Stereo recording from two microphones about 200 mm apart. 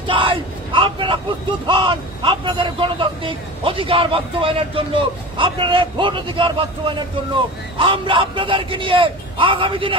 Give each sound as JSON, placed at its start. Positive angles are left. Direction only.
{"t": 0.0, "sound": "vehicle", "side_deg": -25}
{"t": 1.7, "sound": "speech", "side_deg": -25}